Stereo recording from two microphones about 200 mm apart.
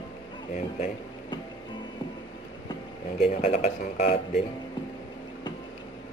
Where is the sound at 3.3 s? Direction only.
35° left (ahead or behind).